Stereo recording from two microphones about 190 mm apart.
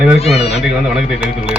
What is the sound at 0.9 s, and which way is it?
Speech, centre (ahead or behind).